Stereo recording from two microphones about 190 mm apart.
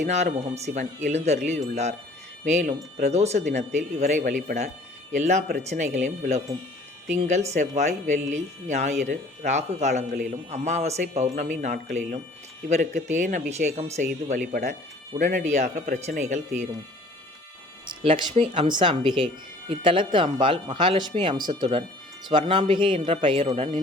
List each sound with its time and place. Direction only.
0.0 s speech: 40° right (ahead or behind)
18.0 s speech: 30° right (ahead or behind)